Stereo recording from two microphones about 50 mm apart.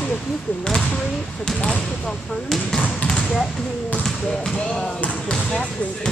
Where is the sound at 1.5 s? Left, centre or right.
Centre.